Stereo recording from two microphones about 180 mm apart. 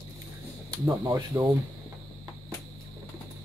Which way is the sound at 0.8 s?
25° right (ahead or behind).